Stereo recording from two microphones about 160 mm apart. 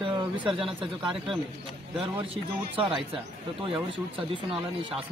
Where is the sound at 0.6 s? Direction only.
35° right (ahead or behind).